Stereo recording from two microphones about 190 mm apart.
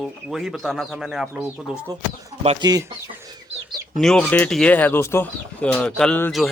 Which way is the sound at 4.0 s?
5° left (ahead or behind).